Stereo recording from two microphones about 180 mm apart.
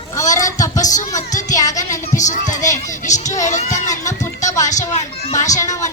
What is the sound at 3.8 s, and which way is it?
Speech, 15° left (ahead or behind).